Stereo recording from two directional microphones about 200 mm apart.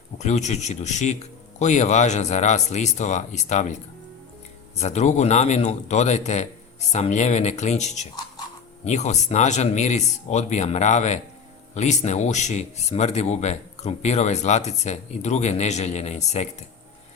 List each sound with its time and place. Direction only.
0.2 s speech: 35° left (ahead or behind)
4.8 s speech: 35° left (ahead or behind)